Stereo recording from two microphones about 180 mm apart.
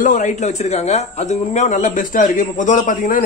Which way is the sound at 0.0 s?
45° left (ahead or behind).